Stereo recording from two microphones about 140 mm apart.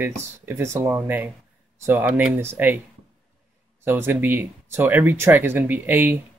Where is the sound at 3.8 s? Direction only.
15° right (ahead or behind).